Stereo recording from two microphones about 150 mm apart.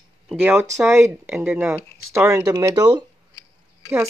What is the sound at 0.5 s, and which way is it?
Speech, 20° right (ahead or behind).